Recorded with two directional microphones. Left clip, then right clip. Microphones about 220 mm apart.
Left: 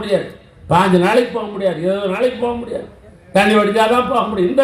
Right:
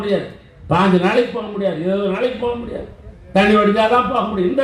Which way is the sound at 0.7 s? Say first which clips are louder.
Left 3 dB; 50° left (ahead or behind).